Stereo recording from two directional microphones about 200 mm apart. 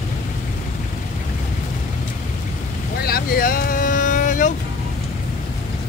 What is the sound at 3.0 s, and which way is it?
Vehicle, 50° left (ahead or behind).